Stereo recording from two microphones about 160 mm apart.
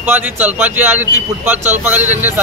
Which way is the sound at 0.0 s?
10° right (ahead or behind).